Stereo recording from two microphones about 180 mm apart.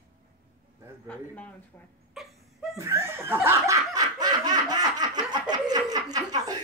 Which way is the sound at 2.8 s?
15° right (ahead or behind).